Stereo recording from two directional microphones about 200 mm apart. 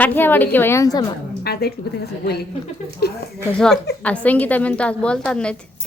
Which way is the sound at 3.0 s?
55° left (ahead or behind).